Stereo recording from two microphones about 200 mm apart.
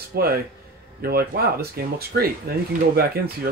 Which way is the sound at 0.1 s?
50° right (ahead or behind).